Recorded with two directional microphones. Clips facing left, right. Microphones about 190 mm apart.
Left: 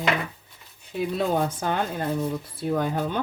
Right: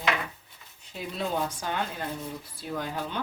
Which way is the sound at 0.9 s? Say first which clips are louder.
Left 7 dB; 55° left (ahead or behind).